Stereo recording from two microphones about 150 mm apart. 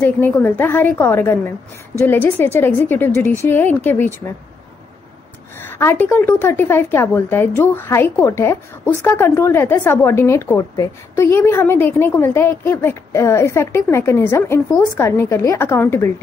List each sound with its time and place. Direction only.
0.0 s a woman's voice: 15° left (ahead or behind)
5.6 s a woman's voice: 15° left (ahead or behind)